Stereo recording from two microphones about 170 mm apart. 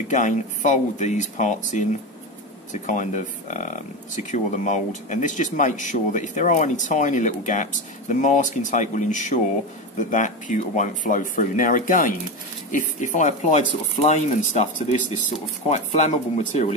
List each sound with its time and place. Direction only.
0.1 s speech: 45° left (ahead or behind)